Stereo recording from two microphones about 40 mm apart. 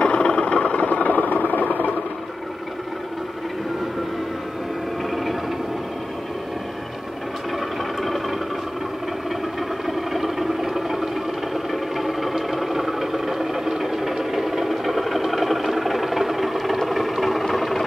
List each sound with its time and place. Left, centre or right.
0.0 s vehicle: left
8.0 s a sound: centre
9.8 s vehicle: centre
11.5 s music: centre